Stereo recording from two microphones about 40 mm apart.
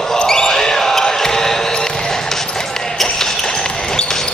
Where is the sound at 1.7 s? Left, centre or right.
Centre.